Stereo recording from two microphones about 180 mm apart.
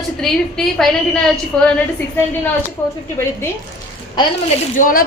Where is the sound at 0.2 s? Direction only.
Centre (ahead or behind).